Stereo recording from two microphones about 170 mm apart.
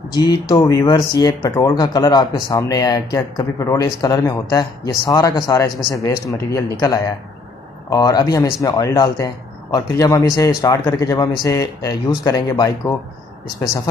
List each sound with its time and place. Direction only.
0.1 s speech: 25° left (ahead or behind)